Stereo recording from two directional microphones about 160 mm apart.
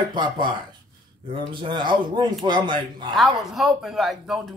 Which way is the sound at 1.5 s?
30° right (ahead or behind).